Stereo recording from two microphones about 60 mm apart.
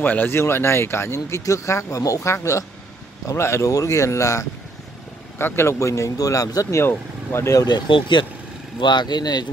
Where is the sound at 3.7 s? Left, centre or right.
Left.